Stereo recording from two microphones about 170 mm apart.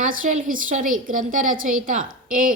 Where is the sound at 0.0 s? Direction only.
50° right (ahead or behind).